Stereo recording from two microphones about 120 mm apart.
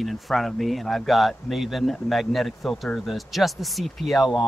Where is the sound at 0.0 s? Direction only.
Centre (ahead or behind).